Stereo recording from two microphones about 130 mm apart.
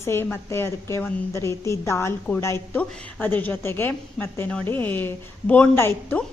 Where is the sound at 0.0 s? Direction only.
20° left (ahead or behind).